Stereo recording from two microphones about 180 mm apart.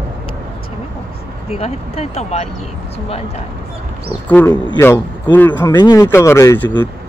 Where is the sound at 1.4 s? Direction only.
35° left (ahead or behind).